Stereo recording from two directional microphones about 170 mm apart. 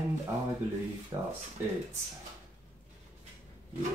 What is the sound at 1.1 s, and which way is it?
Speech, 25° right (ahead or behind).